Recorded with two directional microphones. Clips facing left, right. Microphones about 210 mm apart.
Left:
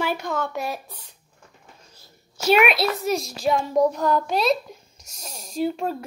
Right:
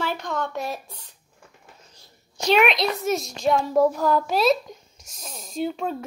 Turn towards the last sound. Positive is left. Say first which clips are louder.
# left 2 dB
turn(degrees=0)  # may be behind; listen again after turning